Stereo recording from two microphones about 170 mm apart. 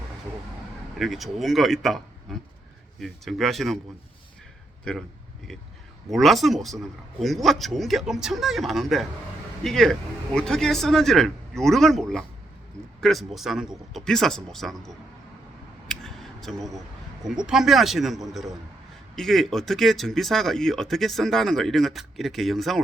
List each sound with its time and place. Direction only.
0.9 s speech: centre (ahead or behind)
6.1 s speech: centre (ahead or behind)
15.9 s a sound: centre (ahead or behind)
17.2 s speech: 5° right (ahead or behind)